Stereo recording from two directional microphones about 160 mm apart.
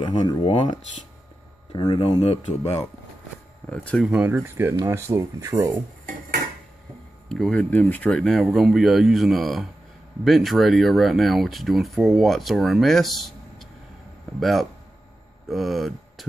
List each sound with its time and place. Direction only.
0.0 s speech: 30° left (ahead or behind)
3.6 s speech: 5° left (ahead or behind)
4.1 s speech: 10° right (ahead or behind)
7.2 s speech: 5° left (ahead or behind)